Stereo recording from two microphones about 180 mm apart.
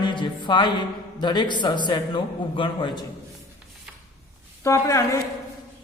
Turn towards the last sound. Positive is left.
turn(degrees=15)  # may be behind; listen again after turning